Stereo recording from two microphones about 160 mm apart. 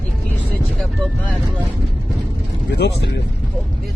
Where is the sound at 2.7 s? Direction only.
90° left.